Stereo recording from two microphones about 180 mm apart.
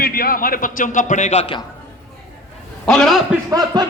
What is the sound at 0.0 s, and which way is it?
A man's voice, 55° left (ahead or behind).